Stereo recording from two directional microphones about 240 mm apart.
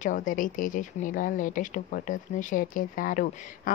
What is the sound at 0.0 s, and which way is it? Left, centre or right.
Speech, left.